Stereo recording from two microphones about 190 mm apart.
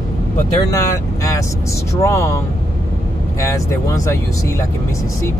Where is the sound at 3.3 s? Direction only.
15° left (ahead or behind).